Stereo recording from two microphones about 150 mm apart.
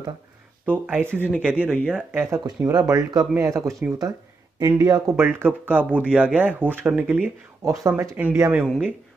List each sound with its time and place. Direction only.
0.7 s speech: 10° right (ahead or behind)
5.1 s speech: 15° right (ahead or behind)
7.6 s speech: 20° right (ahead or behind)
8.2 s speech: 10° right (ahead or behind)